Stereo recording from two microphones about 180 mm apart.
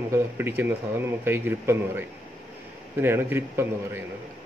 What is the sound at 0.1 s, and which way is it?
Speech, 15° right (ahead or behind).